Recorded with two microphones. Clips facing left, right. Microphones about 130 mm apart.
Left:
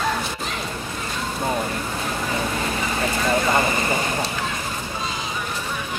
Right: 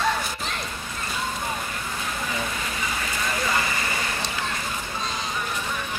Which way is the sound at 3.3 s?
35° left (ahead or behind).